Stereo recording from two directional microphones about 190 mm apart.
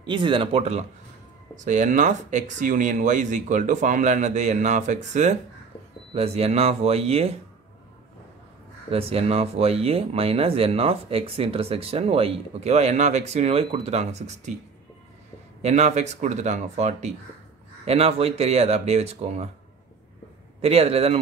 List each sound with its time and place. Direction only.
0.0 s speech: 25° right (ahead or behind)
8.9 s speech: 30° right (ahead or behind)
15.6 s speech: 35° right (ahead or behind)
20.6 s speech: 30° right (ahead or behind)